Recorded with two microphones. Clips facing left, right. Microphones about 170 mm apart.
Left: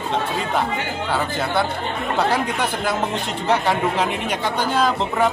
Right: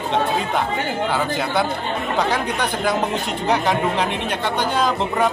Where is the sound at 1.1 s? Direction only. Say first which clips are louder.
Right 1 dB; centre (ahead or behind).